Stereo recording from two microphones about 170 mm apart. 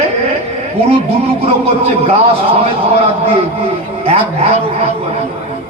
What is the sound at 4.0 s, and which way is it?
Speech, 40° right (ahead or behind).